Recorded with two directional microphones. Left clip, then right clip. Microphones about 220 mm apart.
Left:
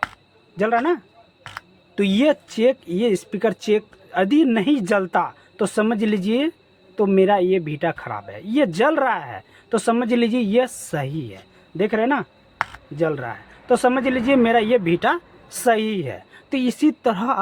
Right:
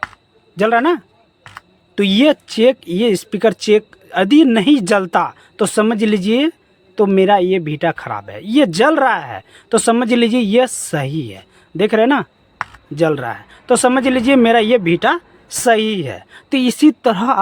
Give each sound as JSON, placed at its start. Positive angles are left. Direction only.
{"t": 0.5, "sound": "speech", "side_deg": -40}
{"t": 12.6, "sound": "a sound", "side_deg": 5}
{"t": 13.0, "sound": "speech", "side_deg": -40}